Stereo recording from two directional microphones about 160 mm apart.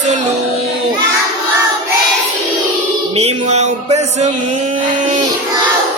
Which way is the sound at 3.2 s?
40° right (ahead or behind).